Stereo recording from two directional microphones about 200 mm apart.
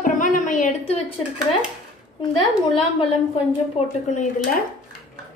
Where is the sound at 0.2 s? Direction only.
40° left (ahead or behind).